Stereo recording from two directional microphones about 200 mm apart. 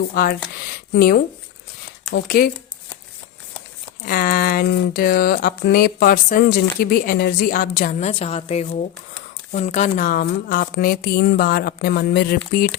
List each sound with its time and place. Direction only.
0.1 s speech: 50° left (ahead or behind)
4.0 s speech: 45° left (ahead or behind)